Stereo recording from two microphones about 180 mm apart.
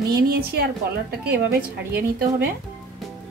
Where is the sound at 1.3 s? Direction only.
60° right (ahead or behind).